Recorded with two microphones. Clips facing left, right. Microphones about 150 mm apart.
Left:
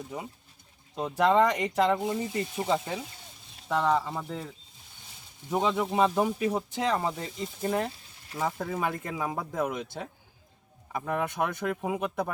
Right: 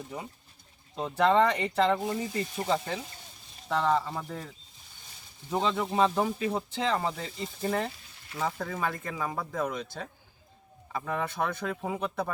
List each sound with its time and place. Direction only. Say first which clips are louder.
0.9 s speech: left 1 dB; 5° left (ahead or behind)